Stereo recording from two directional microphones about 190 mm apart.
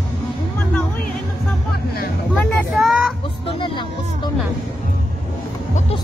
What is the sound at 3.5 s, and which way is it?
Speech, 25° left (ahead or behind).